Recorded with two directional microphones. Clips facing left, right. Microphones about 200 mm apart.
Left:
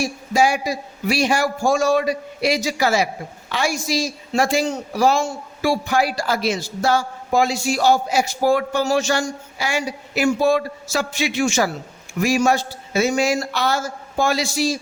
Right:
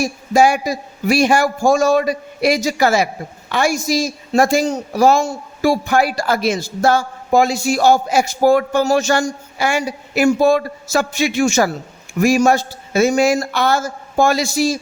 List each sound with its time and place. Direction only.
0.0 s a woman's voice: 50° right (ahead or behind)